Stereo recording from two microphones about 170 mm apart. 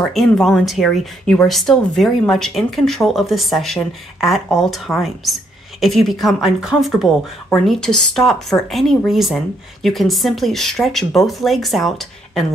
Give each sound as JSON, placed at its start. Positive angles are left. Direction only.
{"t": 0.1, "sound": "speech", "side_deg": 0}